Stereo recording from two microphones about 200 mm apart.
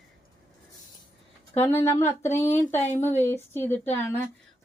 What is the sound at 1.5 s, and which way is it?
Speech, 10° left (ahead or behind).